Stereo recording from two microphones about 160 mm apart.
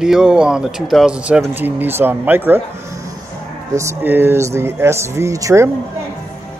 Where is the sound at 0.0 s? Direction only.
5° right (ahead or behind).